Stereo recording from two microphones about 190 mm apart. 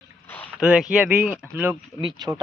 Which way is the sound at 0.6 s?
5° right (ahead or behind).